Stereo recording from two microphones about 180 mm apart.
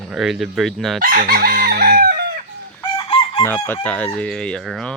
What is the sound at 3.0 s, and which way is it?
Chicken, 25° left (ahead or behind).